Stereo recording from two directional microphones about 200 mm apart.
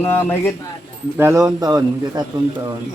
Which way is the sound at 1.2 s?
15° right (ahead or behind).